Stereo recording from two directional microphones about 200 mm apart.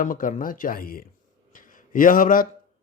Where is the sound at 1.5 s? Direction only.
45° left (ahead or behind).